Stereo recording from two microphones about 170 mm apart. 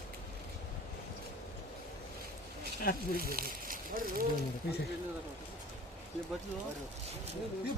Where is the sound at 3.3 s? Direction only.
55° right (ahead or behind).